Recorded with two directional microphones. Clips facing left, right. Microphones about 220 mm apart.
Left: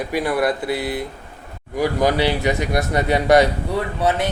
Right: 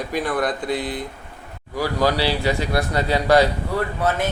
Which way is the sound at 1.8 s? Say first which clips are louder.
Left 3 dB; 20° left (ahead or behind).